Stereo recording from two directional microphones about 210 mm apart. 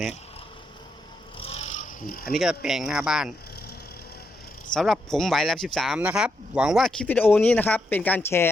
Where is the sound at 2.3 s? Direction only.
5° right (ahead or behind).